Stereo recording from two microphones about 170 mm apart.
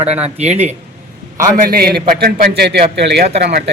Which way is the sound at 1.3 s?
55° right (ahead or behind).